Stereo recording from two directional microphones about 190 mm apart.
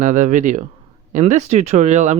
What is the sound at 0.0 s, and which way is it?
Speech, 40° right (ahead or behind).